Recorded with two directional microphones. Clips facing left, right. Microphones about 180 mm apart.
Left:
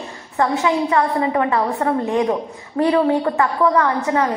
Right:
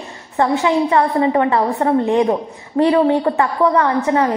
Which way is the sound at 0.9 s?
30° right (ahead or behind).